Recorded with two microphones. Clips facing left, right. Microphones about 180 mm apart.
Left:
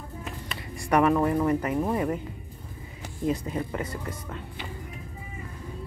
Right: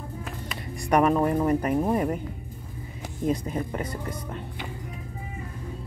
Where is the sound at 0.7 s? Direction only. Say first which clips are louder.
Right 1 dB; 15° right (ahead or behind).